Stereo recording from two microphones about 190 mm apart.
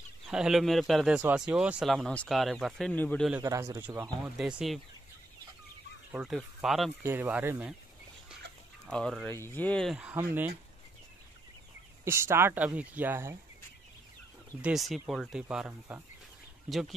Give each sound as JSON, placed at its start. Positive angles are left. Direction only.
{"t": 0.3, "sound": "speech", "side_deg": -5}
{"t": 3.4, "sound": "speech", "side_deg": -15}
{"t": 4.4, "sound": "speech", "side_deg": -5}
{"t": 6.1, "sound": "speech", "side_deg": 0}
{"t": 8.8, "sound": "speech", "side_deg": 5}
{"t": 12.0, "sound": "speech", "side_deg": -15}
{"t": 14.6, "sound": "speech", "side_deg": 0}